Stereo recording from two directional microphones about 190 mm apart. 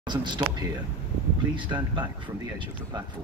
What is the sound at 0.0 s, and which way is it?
Speech, 25° right (ahead or behind).